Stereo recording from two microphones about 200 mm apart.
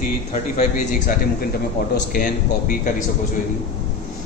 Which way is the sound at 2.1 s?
45° left (ahead or behind).